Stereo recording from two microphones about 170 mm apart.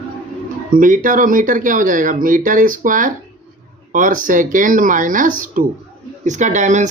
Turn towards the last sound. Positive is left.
turn(degrees=-45)  # may be behind; listen again after turning